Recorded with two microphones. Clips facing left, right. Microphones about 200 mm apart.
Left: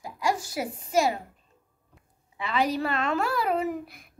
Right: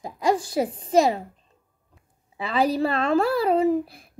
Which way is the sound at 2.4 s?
35° right (ahead or behind).